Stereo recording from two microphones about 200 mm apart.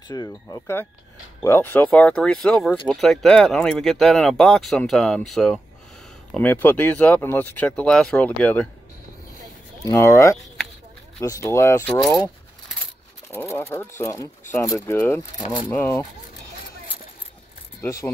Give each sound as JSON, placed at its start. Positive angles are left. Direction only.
{"t": 0.1, "sound": "speech", "side_deg": 15}
{"t": 9.8, "sound": "speech", "side_deg": 15}
{"t": 13.3, "sound": "speech", "side_deg": 10}